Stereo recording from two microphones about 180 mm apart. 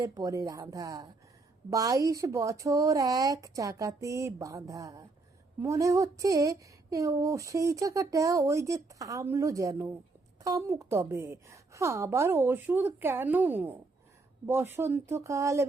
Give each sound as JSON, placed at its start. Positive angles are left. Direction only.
{"t": 0.0, "sound": "speech", "side_deg": -20}